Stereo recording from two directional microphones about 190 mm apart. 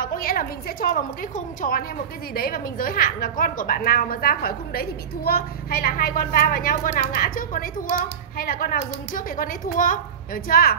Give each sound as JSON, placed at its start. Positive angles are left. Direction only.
{"t": 0.0, "sound": "a woman's voice", "side_deg": 50}